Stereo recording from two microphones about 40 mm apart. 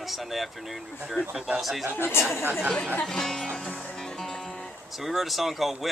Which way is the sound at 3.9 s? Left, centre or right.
Centre.